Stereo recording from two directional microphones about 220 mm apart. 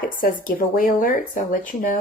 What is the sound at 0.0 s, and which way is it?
Speech, 40° left (ahead or behind).